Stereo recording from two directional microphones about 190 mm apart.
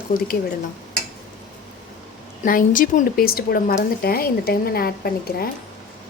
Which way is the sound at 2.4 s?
45° left (ahead or behind).